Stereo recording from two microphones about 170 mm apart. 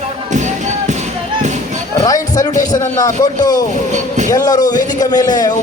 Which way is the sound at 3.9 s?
45° right (ahead or behind).